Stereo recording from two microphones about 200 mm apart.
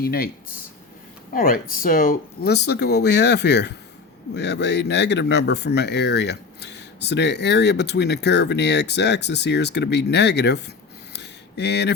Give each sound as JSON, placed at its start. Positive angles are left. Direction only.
{"t": 0.0, "sound": "speech", "side_deg": 50}
{"t": 1.3, "sound": "speech", "side_deg": 45}
{"t": 11.1, "sound": "a sound", "side_deg": 60}